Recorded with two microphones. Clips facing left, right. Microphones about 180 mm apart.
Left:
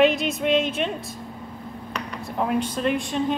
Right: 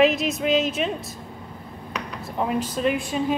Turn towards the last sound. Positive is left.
turn(degrees=-5)  # may be behind; listen again after turning